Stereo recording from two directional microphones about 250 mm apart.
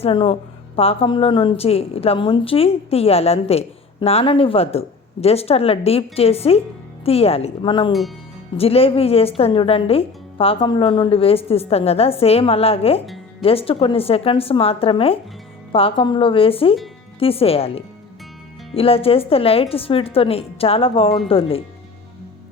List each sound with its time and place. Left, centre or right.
0.0 s a woman's voice: left